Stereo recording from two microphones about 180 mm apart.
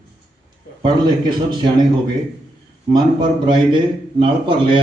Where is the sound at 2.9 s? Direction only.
25° right (ahead or behind).